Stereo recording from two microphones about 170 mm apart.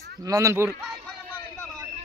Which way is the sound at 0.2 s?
20° right (ahead or behind).